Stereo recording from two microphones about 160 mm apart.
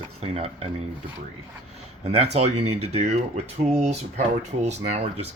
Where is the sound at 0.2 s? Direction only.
40° right (ahead or behind).